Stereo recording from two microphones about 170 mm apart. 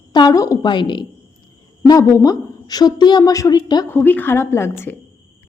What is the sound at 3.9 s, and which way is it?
Speech, 10° left (ahead or behind).